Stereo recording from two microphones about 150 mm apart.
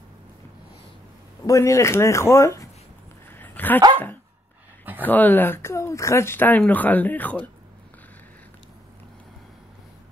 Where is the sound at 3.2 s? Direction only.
15° left (ahead or behind).